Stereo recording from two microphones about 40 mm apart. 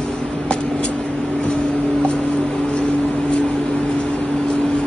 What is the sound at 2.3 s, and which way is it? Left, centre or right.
Music, centre.